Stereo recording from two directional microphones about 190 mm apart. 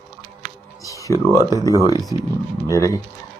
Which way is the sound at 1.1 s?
15° right (ahead or behind).